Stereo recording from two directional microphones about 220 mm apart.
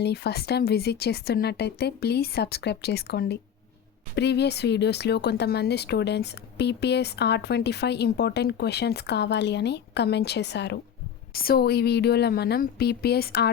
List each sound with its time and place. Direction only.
0.0 s speech: 45° left (ahead or behind)